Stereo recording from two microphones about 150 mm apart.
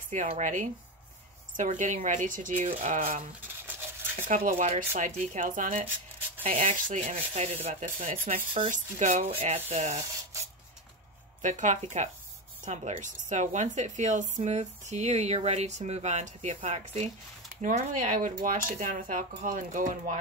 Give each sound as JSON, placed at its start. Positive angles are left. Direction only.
{"t": 0.1, "sound": "speech", "side_deg": -55}
{"t": 3.6, "sound": "a sound", "side_deg": -15}
{"t": 4.2, "sound": "a woman's voice", "side_deg": -65}
{"t": 11.4, "sound": "a woman's voice", "side_deg": -55}